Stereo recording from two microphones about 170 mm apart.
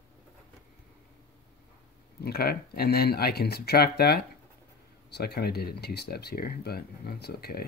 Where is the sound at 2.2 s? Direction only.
65° left (ahead or behind).